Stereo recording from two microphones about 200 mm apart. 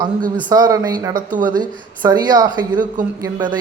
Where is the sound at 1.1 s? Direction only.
40° right (ahead or behind).